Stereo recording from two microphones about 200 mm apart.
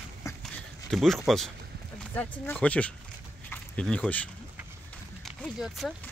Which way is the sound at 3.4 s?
5° left (ahead or behind).